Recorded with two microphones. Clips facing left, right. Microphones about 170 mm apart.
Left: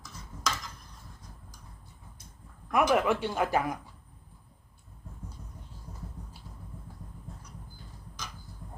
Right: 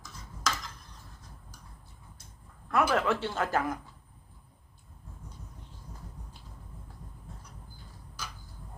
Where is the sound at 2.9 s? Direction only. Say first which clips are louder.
Left 2 dB; 15° left (ahead or behind).